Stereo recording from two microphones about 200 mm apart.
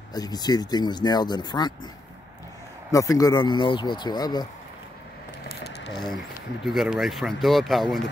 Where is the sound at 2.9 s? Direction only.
15° left (ahead or behind).